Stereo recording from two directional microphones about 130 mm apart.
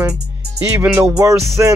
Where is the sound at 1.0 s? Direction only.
25° right (ahead or behind).